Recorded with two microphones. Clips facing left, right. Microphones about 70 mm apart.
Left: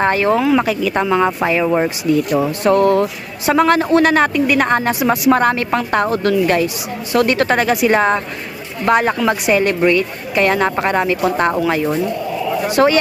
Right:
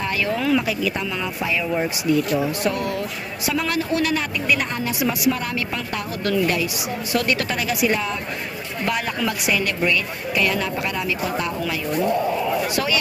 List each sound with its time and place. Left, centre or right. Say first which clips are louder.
0.0 s speech: left 9 dB; left
2.4 s speech: left 9 dB; left
8.9 s speech: left 10 dB; left
12.6 s speech: left 9 dB; left